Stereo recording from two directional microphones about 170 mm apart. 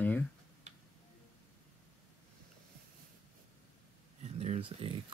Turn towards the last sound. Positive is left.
turn(degrees=-35)  # may be behind; listen again after turning